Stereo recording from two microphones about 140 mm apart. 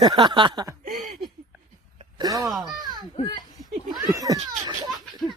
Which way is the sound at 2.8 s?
30° right (ahead or behind).